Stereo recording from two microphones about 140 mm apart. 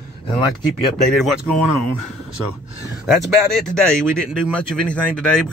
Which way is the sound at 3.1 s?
5° left (ahead or behind).